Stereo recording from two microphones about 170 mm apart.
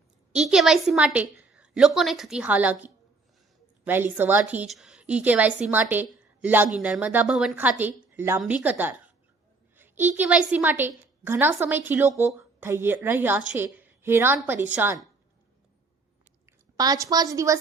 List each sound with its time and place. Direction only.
0.3 s a woman's voice: centre (ahead or behind)
16.7 s a woman's voice: 20° right (ahead or behind)